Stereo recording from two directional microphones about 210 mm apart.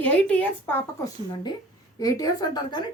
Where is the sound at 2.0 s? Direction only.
15° left (ahead or behind).